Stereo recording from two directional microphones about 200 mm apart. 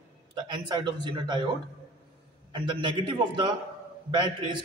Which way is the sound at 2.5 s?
25° right (ahead or behind).